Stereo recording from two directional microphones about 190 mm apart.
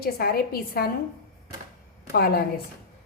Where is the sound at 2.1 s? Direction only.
55° left (ahead or behind).